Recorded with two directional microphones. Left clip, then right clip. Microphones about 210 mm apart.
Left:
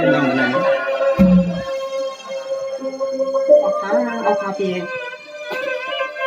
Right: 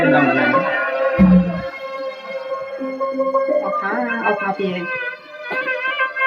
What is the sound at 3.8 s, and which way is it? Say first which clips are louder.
Music: left 2 dB; 25° left (ahead or behind).